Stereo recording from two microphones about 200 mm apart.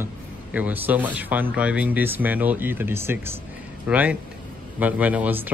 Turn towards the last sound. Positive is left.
turn(degrees=-5)  # may be behind; listen again after turning